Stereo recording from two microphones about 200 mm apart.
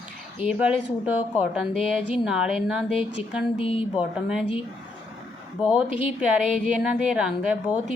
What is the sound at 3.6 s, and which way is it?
Speech, 25° left (ahead or behind).